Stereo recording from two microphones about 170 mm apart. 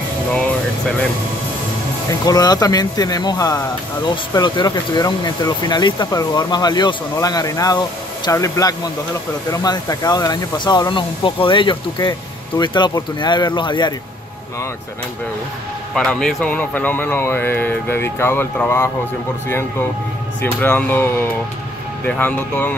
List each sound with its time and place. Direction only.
2.0 s speech: 20° left (ahead or behind)
15.9 s a man's voice: 5° left (ahead or behind)
20.6 s a man's voice: 10° left (ahead or behind)